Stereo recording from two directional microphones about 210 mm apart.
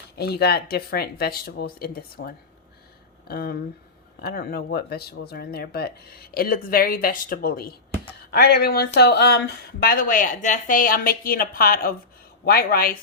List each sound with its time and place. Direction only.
0.2 s speech: 50° left (ahead or behind)